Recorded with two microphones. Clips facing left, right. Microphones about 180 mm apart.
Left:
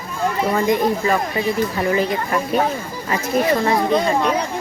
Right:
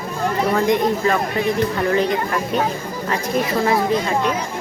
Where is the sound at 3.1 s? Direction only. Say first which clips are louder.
Left 3 dB; centre (ahead or behind).